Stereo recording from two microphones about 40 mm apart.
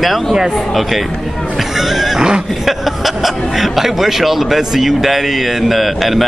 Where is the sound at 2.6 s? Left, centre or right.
Centre.